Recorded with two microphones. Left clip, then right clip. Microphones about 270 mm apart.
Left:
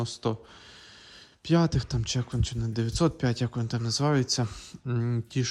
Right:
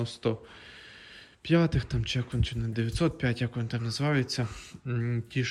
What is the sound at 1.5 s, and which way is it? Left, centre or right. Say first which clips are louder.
Speech: even; centre.